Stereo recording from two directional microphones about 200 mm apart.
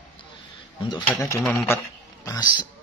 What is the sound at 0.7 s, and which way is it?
Speech, 20° left (ahead or behind).